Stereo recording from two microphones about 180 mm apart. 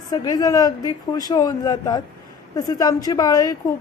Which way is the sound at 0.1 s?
20° left (ahead or behind).